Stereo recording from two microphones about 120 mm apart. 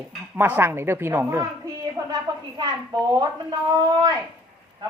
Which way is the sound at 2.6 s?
35° right (ahead or behind).